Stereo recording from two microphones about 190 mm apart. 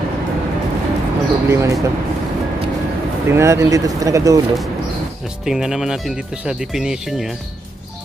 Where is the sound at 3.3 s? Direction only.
15° right (ahead or behind).